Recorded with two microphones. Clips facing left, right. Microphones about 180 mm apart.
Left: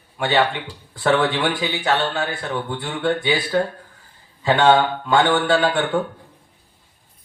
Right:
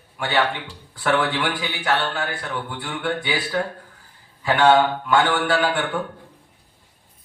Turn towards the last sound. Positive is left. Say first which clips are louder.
# left 3 dB
turn(degrees=25)  # may be behind; listen again after turning